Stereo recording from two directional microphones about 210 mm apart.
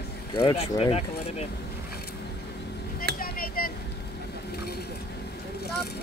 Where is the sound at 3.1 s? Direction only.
45° left (ahead or behind).